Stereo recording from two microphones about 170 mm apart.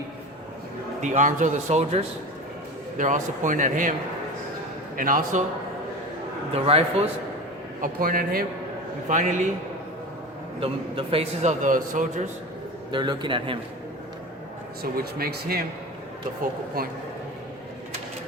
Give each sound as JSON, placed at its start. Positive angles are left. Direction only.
{"t": 1.0, "sound": "speech", "side_deg": -45}
{"t": 4.9, "sound": "speech", "side_deg": -55}
{"t": 6.5, "sound": "a man's voice", "side_deg": -35}
{"t": 7.8, "sound": "speech", "side_deg": -60}
{"t": 9.0, "sound": "speech", "side_deg": -50}
{"t": 10.6, "sound": "a man's voice", "side_deg": -35}
{"t": 11.6, "sound": "speech", "side_deg": -50}
{"t": 12.9, "sound": "a man's voice", "side_deg": -25}
{"t": 14.8, "sound": "speech", "side_deg": -65}
{"t": 16.8, "sound": "speech", "side_deg": -60}